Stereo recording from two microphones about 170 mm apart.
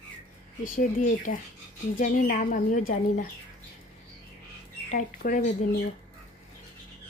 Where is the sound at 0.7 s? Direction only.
50° left (ahead or behind).